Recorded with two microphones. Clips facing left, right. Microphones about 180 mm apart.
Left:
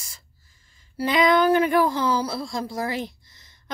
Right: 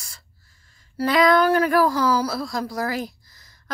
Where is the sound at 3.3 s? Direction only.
25° left (ahead or behind).